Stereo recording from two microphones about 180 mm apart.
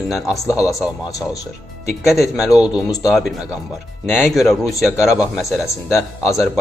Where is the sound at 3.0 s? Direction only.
Centre (ahead or behind).